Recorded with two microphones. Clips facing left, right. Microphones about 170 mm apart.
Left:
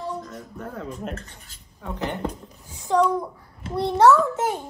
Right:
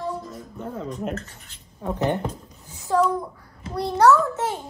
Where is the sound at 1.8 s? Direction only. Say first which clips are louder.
Right 6 dB; 20° right (ahead or behind).